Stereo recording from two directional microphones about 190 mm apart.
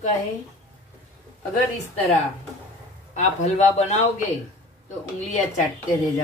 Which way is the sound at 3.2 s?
35° left (ahead or behind).